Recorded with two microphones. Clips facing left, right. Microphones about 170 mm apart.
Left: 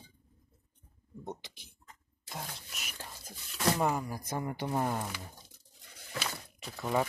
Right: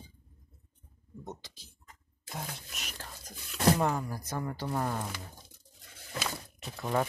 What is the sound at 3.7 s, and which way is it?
Speech, 5° left (ahead or behind).